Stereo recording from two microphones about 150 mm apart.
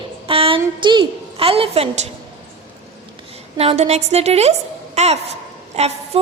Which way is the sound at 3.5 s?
45° right (ahead or behind).